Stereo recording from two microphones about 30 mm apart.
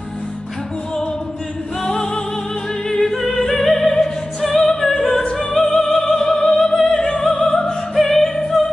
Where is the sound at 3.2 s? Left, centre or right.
Centre.